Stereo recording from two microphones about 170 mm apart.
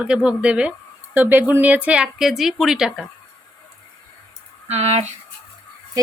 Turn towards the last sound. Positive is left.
turn(degrees=-40)  # may be behind; listen again after turning